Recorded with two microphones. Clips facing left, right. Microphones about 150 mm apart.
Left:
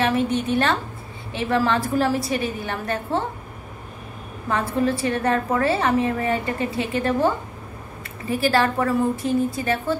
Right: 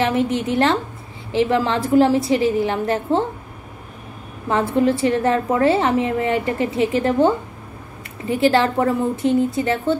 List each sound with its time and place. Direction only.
0.0 s a woman's voice: 20° right (ahead or behind)
4.7 s a woman's voice: 25° right (ahead or behind)